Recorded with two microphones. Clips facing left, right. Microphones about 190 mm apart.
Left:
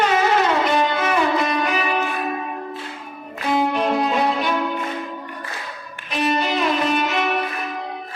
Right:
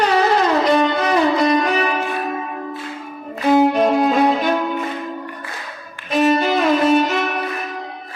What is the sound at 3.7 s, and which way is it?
Music, 45° right (ahead or behind).